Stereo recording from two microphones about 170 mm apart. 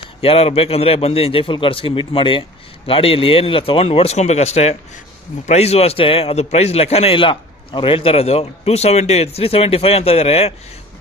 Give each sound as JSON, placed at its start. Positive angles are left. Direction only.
{"t": 0.2, "sound": "a man's voice", "side_deg": 35}